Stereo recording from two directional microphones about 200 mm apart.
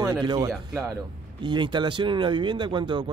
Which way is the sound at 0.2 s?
20° right (ahead or behind).